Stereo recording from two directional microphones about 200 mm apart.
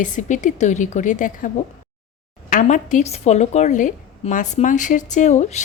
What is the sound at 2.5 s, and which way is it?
A woman's voice, 40° left (ahead or behind).